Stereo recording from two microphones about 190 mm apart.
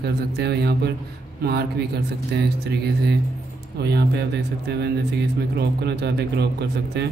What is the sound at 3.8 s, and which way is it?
Mantra, 60° right (ahead or behind).